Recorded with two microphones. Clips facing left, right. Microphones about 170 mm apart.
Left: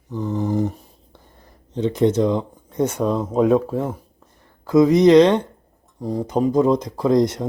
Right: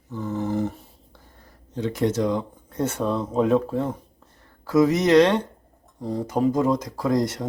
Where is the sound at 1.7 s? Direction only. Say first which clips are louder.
Left 5 dB; 20° left (ahead or behind).